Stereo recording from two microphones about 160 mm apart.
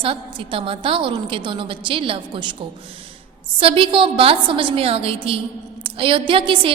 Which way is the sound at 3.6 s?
35° right (ahead or behind).